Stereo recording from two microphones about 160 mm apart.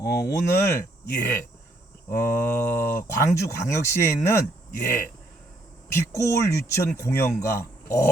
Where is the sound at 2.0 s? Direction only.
15° left (ahead or behind).